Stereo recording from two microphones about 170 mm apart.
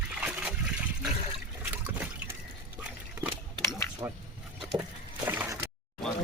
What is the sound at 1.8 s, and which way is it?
Liquid, 10° right (ahead or behind).